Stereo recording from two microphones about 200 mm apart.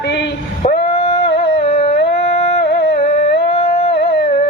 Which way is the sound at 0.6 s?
35° left (ahead or behind).